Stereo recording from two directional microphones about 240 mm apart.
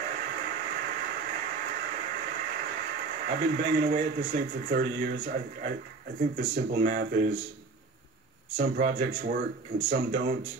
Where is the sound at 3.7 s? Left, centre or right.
Right.